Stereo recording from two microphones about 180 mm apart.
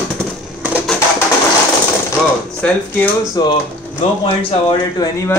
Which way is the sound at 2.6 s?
5° left (ahead or behind).